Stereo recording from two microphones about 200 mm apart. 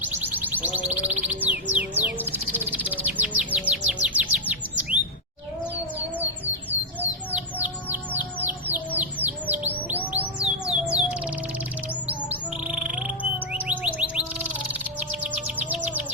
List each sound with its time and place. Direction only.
0.0 s music: 10° right (ahead or behind)
6.1 s music: 10° right (ahead or behind)
7.3 s bird: 10° right (ahead or behind)
13.5 s music: 5° right (ahead or behind)
15.2 s bird: 10° right (ahead or behind)